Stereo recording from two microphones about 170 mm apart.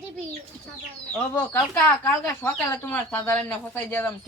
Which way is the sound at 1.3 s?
15° left (ahead or behind).